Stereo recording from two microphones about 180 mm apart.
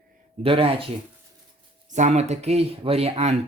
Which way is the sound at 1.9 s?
40° right (ahead or behind).